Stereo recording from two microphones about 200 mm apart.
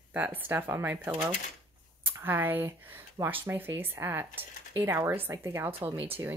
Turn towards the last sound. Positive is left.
turn(degrees=-10)  # may be behind; listen again after turning